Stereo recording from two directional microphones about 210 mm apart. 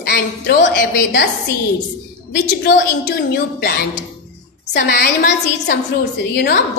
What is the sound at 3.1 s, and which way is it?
Speech, 50° left (ahead or behind).